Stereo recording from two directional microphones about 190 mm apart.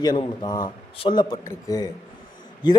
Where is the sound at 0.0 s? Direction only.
20° left (ahead or behind).